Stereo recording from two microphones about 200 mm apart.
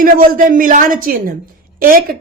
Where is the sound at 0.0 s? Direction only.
45° right (ahead or behind).